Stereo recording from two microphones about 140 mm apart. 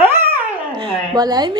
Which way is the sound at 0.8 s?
35° right (ahead or behind).